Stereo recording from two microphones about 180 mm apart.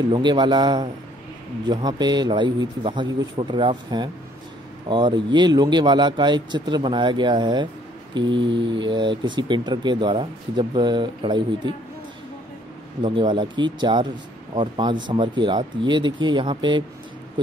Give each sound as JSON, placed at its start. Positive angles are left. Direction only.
{"t": 0.1, "sound": "speech", "side_deg": -25}
{"t": 8.3, "sound": "mantra", "side_deg": -90}
{"t": 8.5, "sound": "speech", "side_deg": -25}
{"t": 13.0, "sound": "speech", "side_deg": -25}